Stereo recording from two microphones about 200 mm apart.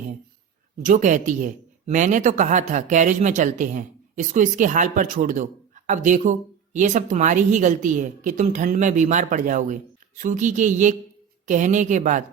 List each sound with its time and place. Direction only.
0.8 s speech: 40° right (ahead or behind)